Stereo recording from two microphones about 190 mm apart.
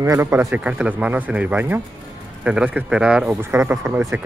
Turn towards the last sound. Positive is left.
turn(degrees=-10)  # may be behind; listen again after turning